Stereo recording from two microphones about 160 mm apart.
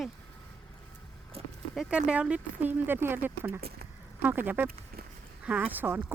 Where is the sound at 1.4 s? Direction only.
40° right (ahead or behind).